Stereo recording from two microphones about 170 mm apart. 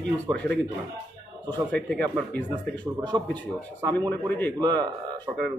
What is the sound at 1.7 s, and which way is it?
Speech, 10° left (ahead or behind).